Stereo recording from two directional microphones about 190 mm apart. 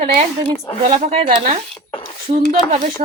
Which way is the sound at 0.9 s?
30° right (ahead or behind).